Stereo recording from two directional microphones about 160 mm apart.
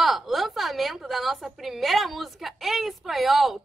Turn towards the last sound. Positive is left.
turn(degrees=0)  # may be behind; listen again after turning